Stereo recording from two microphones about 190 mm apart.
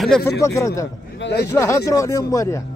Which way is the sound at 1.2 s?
60° left (ahead or behind).